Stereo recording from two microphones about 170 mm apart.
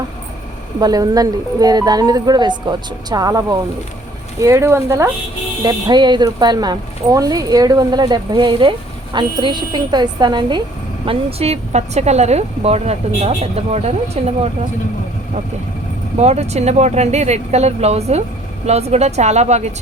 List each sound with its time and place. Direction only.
0.8 s speech: 20° right (ahead or behind)
5.6 s a woman's voice: 25° right (ahead or behind)
16.2 s a woman's voice: 40° right (ahead or behind)